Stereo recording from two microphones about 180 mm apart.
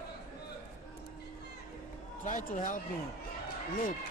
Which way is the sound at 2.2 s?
45° left (ahead or behind).